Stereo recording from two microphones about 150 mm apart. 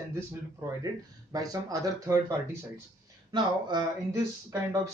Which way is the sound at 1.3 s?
25° right (ahead or behind).